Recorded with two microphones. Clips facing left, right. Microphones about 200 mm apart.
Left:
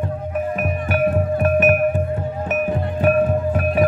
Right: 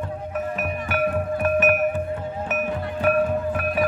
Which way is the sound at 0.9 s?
40° left (ahead or behind).